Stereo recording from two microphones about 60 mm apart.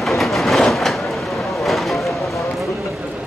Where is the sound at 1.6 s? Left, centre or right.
Centre.